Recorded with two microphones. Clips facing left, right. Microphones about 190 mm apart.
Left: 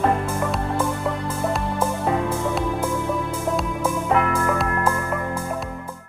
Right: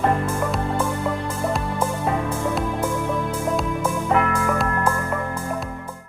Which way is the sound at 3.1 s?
Centre (ahead or behind).